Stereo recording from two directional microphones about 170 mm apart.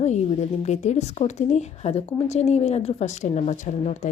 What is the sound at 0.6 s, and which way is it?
Speech, 40° left (ahead or behind).